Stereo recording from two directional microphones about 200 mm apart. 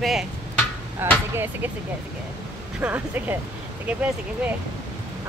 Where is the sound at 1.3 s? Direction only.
10° right (ahead or behind).